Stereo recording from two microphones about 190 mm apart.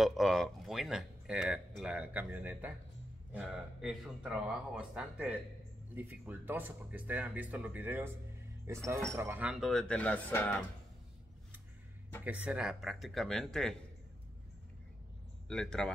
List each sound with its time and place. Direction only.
0.0 s speech: centre (ahead or behind)
12.3 s speech: 5° right (ahead or behind)
15.4 s speech: 5° left (ahead or behind)